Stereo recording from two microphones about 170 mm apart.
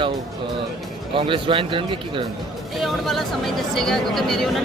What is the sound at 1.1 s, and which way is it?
Speech, 30° right (ahead or behind).